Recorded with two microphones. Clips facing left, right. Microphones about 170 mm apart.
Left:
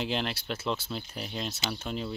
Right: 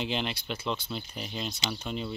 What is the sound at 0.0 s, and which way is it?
Speech, centre (ahead or behind).